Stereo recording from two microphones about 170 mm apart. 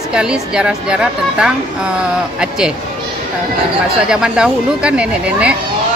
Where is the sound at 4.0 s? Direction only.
5° right (ahead or behind).